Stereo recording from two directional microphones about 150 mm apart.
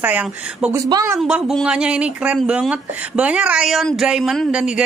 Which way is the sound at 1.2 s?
Centre (ahead or behind).